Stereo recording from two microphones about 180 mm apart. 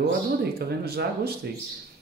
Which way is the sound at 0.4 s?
60° right (ahead or behind).